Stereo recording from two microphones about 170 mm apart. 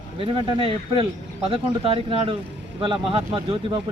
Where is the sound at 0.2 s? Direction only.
35° right (ahead or behind).